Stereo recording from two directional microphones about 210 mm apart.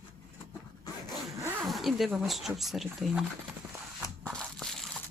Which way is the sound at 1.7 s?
Centre (ahead or behind).